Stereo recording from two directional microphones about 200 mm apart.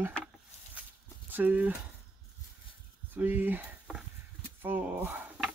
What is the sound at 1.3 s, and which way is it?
Speech, 10° right (ahead or behind).